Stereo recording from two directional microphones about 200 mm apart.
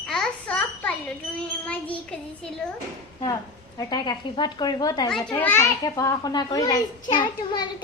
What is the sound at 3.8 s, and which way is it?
A child's voice, 20° left (ahead or behind).